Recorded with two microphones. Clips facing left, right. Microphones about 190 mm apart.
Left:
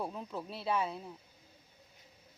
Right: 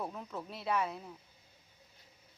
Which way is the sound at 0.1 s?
15° left (ahead or behind).